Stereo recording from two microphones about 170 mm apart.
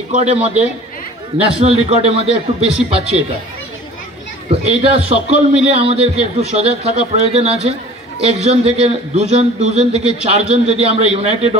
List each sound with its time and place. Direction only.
0.1 s a man's voice: 40° right (ahead or behind)
1.6 s a man's voice: 35° right (ahead or behind)
4.5 s a man's voice: 35° right (ahead or behind)